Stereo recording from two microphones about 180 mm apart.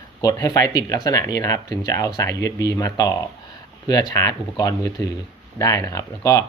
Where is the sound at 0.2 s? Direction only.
20° left (ahead or behind).